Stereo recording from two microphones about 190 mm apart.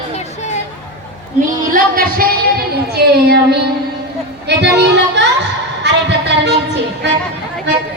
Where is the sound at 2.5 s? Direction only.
60° right (ahead or behind).